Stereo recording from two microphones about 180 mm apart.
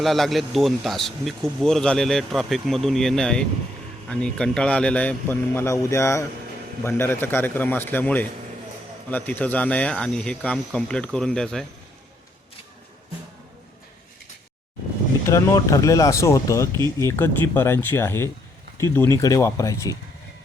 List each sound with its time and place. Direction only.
0.0 s speech: centre (ahead or behind)
15.3 s speech: 15° left (ahead or behind)